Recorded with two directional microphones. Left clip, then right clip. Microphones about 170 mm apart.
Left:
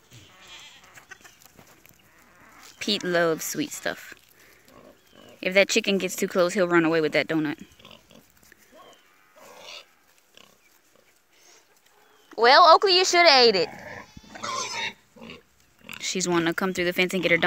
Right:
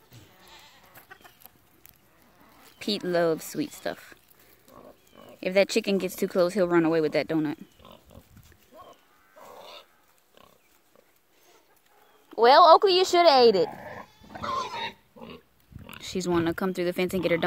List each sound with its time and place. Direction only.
0.1 s goat: 40° right (ahead or behind)
2.8 s speech: centre (ahead or behind)
5.4 s speech: centre (ahead or behind)
7.8 s pig: 40° right (ahead or behind)
9.4 s dog: 40° right (ahead or behind)
12.3 s speech: 15° right (ahead or behind)
13.7 s pig: 30° right (ahead or behind)
16.0 s speech: 5° right (ahead or behind)